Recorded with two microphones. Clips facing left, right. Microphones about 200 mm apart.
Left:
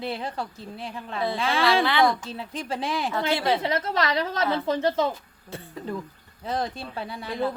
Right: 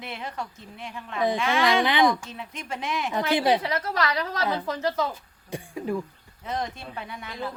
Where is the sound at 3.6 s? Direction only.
25° left (ahead or behind).